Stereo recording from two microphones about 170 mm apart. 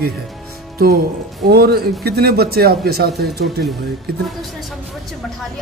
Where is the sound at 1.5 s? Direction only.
65° right (ahead or behind).